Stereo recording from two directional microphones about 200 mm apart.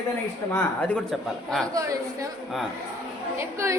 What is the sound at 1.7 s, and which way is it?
Speech, 15° right (ahead or behind).